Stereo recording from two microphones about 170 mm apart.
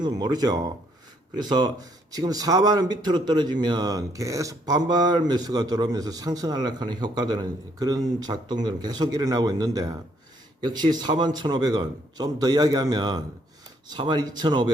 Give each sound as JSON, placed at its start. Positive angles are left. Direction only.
{"t": 0.0, "sound": "a man's voice", "side_deg": -25}